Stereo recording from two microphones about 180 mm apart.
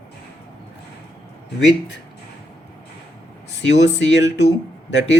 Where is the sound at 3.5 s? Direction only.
80° left.